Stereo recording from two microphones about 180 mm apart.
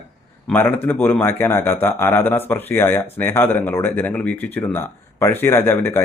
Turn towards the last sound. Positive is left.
turn(degrees=10)  # may be behind; listen again after turning